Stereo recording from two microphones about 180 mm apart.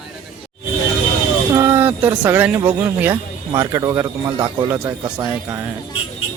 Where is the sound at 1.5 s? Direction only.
15° right (ahead or behind).